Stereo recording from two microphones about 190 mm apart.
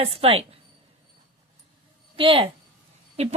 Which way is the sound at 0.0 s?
30° right (ahead or behind).